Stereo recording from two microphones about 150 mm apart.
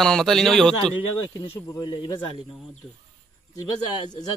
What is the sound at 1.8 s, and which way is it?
Speech, 30° left (ahead or behind).